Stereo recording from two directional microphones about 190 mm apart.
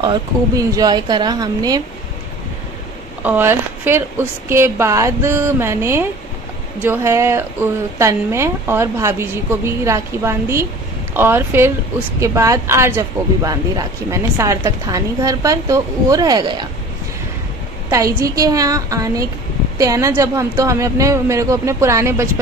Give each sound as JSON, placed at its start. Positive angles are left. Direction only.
{"t": 0.0, "sound": "speech", "side_deg": -20}
{"t": 3.2, "sound": "speech", "side_deg": -10}
{"t": 17.8, "sound": "speech", "side_deg": -15}